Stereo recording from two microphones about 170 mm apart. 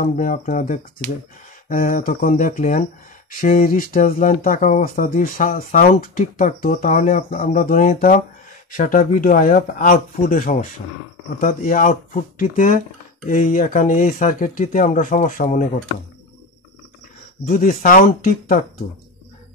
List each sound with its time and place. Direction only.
0.0 s speech: 55° left (ahead or behind)
17.5 s speech: 50° left (ahead or behind)